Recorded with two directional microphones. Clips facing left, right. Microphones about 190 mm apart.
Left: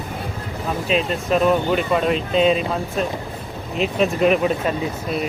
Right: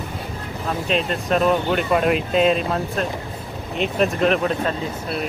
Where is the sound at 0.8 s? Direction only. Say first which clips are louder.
Left 2 dB; centre (ahead or behind).